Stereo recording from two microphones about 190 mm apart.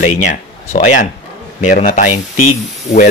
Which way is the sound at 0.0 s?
40° left (ahead or behind).